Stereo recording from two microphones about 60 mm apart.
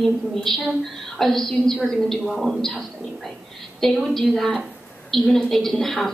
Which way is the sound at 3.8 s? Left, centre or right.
Centre.